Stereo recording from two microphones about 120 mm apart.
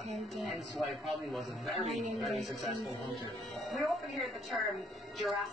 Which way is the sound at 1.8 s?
70° right (ahead or behind).